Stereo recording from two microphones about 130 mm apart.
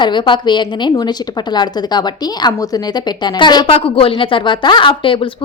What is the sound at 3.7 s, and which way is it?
A woman's voice, 45° left (ahead or behind).